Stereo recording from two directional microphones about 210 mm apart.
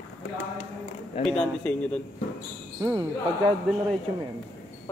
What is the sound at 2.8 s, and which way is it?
Speech, 20° right (ahead or behind).